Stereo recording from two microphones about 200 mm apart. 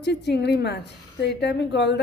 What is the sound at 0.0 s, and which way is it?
A woman's voice, 60° left (ahead or behind).